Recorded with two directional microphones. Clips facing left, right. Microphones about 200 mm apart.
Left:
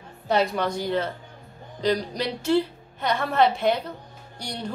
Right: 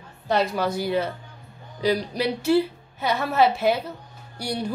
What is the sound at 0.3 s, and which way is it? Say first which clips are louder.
A woman's voice: even; centre (ahead or behind).